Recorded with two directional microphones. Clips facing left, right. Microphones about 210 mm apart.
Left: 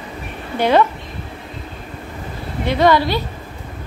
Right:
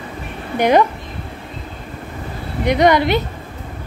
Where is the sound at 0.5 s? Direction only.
15° right (ahead or behind).